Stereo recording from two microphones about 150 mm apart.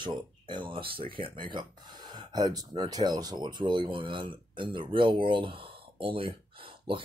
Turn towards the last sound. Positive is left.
turn(degrees=-35)  # may be behind; listen again after turning